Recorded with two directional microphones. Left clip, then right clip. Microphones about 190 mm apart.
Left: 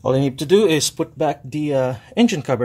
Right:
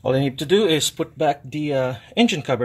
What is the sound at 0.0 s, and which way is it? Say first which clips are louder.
Speech: left 2 dB; centre (ahead or behind).